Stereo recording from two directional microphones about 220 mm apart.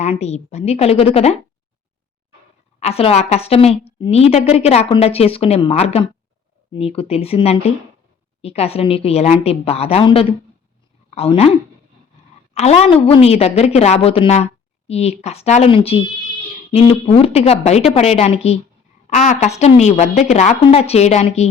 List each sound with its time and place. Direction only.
0.0 s a woman's voice: 30° left (ahead or behind)
2.8 s a woman's voice: 25° left (ahead or behind)
12.5 s a woman's voice: 30° left (ahead or behind)